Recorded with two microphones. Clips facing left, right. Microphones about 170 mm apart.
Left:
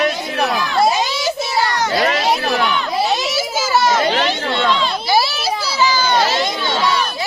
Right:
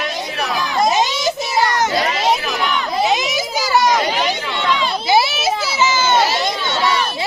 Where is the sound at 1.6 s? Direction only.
20° right (ahead or behind).